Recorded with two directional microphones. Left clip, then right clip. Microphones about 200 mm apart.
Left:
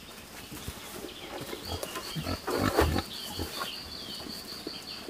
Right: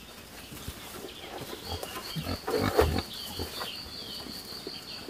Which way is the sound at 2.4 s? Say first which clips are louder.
Right 1 dB; 25° left (ahead or behind).